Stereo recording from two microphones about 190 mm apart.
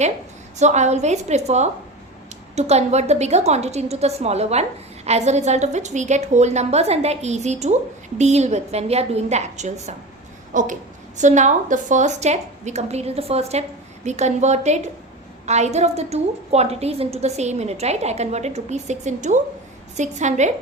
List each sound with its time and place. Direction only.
0.6 s a woman's voice: 35° right (ahead or behind)